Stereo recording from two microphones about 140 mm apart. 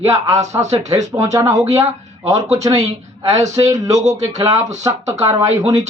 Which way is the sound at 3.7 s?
25° right (ahead or behind).